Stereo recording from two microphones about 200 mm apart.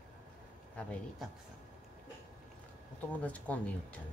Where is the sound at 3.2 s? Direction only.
5° left (ahead or behind).